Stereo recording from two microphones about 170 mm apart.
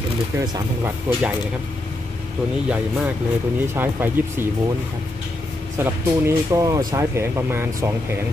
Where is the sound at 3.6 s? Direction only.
10° right (ahead or behind).